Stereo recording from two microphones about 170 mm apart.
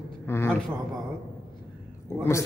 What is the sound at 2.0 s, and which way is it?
Speech, 15° left (ahead or behind).